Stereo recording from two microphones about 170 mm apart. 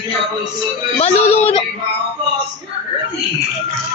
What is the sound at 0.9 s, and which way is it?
Speech, 40° left (ahead or behind).